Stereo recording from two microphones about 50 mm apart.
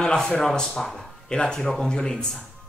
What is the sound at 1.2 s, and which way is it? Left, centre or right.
Speech, centre.